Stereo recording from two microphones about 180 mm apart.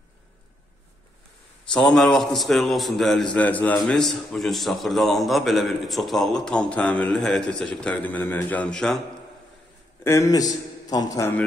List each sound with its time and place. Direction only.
1.7 s a man's voice: 5° left (ahead or behind)
10.0 s a man's voice: 15° left (ahead or behind)